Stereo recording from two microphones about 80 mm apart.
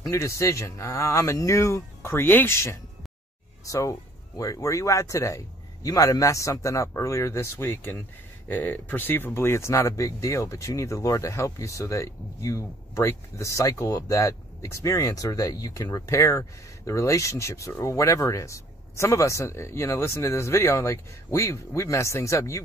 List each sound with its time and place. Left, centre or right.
0.0 s speech: left